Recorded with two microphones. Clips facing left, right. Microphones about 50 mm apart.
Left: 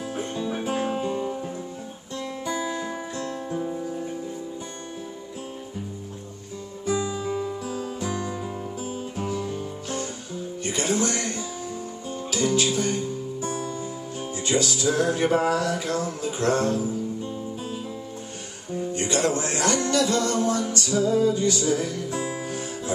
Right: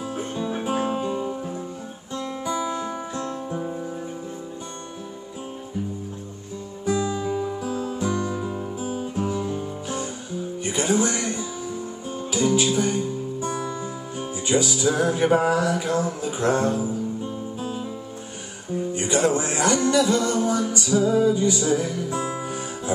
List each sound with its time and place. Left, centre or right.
0.2 s music: centre
0.7 s guitar: centre
3.2 s music: centre
7.2 s music: centre
9.3 s music: centre
18.9 s music: centre